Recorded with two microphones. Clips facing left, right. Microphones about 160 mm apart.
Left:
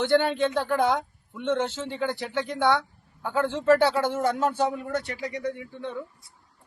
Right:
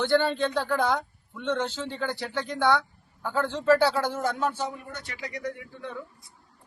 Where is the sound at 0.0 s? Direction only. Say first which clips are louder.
Left 1 dB; 20° left (ahead or behind).